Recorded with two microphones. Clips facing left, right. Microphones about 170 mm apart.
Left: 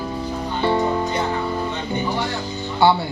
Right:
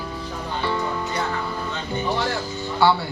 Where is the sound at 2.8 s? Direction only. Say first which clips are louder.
Left 2 dB; 20° left (ahead or behind).